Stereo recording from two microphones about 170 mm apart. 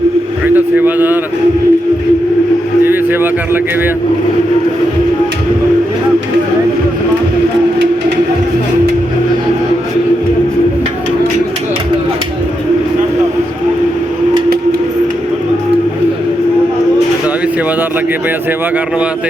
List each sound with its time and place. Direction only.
0.4 s a man's voice: 10° right (ahead or behind)
2.8 s speech: 10° right (ahead or behind)